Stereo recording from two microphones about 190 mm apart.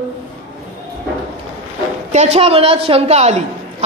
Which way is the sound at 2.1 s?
35° right (ahead or behind).